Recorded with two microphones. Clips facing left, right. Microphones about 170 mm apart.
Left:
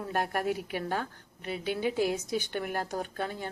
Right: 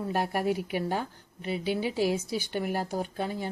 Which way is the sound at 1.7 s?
50° left (ahead or behind).